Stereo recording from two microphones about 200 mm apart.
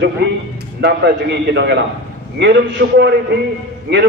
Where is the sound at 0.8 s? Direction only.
60° right (ahead or behind).